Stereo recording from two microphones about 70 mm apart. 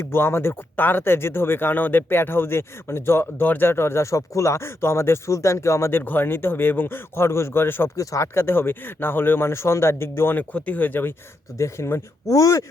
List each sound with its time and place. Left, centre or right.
0.0 s speech: left
6.0 s speech: left
7.9 s speech: left
8.4 s speech: left
10.3 s speech: left
11.5 s speech: left